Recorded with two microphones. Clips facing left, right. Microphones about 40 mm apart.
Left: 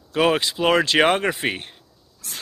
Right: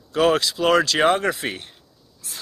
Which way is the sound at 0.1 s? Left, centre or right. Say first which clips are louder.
Right 1 dB; left.